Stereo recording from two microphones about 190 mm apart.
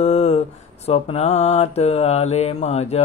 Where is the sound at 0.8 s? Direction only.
35° left (ahead or behind).